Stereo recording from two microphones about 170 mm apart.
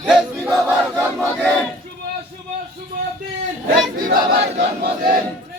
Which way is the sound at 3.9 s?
55° right (ahead or behind).